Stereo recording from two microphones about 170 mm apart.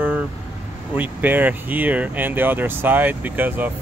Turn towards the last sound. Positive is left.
turn(degrees=-10)  # may be behind; listen again after turning